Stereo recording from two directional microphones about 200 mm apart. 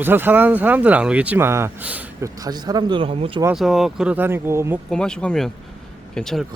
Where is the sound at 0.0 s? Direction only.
10° right (ahead or behind); by 3.4 s 25° right (ahead or behind).